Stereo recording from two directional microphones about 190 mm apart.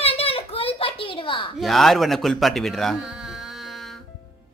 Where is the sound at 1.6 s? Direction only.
Centre (ahead or behind).